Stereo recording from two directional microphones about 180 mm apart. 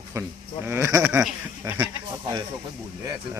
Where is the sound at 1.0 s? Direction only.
5° right (ahead or behind).